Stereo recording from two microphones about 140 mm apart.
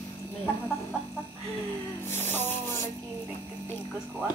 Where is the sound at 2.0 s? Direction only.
15° left (ahead or behind).